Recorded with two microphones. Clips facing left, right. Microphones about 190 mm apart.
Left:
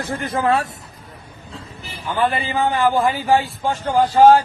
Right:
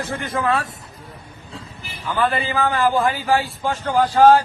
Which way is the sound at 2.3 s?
15° left (ahead or behind).